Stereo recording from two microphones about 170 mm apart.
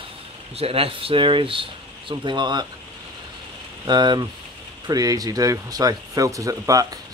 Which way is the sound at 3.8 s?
25° right (ahead or behind).